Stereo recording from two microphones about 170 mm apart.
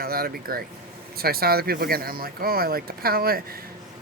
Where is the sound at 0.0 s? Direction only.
60° right (ahead or behind).